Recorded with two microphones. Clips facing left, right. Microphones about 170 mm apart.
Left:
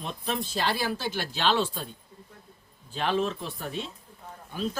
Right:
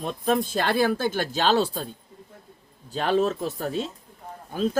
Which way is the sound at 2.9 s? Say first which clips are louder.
Right 5 dB; 40° right (ahead or behind).